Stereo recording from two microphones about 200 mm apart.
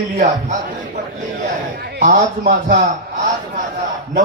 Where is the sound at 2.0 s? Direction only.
40° right (ahead or behind).